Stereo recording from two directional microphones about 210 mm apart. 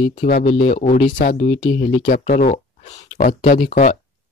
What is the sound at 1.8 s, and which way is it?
Speech, 40° left (ahead or behind).